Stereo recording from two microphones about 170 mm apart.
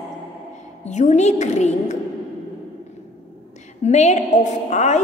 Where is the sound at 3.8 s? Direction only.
40° left (ahead or behind).